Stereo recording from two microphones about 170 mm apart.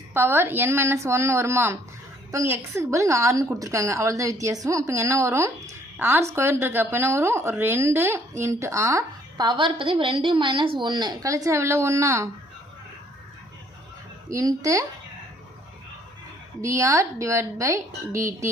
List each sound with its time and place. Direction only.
0.1 s a woman's voice: 15° right (ahead or behind)
14.3 s a woman's voice: 20° right (ahead or behind)
16.6 s a woman's voice: 15° right (ahead or behind)